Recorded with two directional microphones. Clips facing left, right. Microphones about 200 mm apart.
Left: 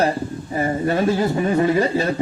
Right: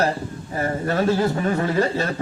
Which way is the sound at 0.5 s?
15° left (ahead or behind).